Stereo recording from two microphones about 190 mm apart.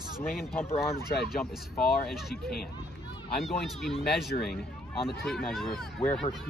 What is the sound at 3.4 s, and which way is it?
Speech, centre (ahead or behind).